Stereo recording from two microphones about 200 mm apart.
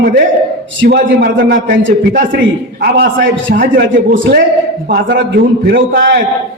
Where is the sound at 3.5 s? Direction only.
50° right (ahead or behind).